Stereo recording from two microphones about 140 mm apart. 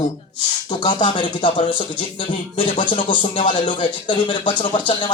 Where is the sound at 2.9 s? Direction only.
35° left (ahead or behind).